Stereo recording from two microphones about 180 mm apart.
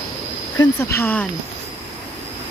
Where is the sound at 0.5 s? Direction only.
15° left (ahead or behind).